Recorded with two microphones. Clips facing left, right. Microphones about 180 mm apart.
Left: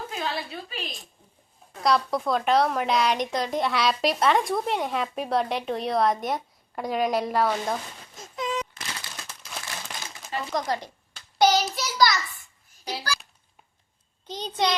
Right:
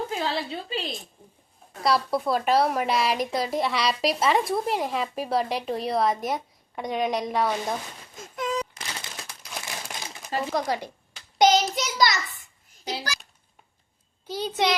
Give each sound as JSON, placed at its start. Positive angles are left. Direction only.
{"t": 0.1, "sound": "a woman's voice", "side_deg": -25}
{"t": 1.8, "sound": "a woman's voice", "side_deg": -5}
{"t": 8.4, "sound": "a sound", "side_deg": -45}
{"t": 9.0, "sound": "crumpling", "side_deg": -15}
{"t": 10.5, "sound": "a child's voice", "side_deg": -10}
{"t": 11.3, "sound": "child singing", "side_deg": -20}
{"t": 11.7, "sound": "a child's voice", "side_deg": -20}
{"t": 12.8, "sound": "babbling", "side_deg": -20}
{"t": 14.3, "sound": "a child's voice", "side_deg": -10}